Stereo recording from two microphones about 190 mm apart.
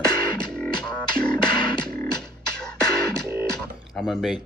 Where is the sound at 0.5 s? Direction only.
5° left (ahead or behind).